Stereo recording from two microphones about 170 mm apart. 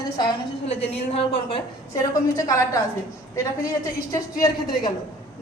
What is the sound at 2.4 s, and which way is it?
Speech, 20° left (ahead or behind).